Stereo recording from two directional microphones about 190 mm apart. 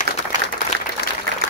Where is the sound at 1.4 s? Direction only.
70° left (ahead or behind).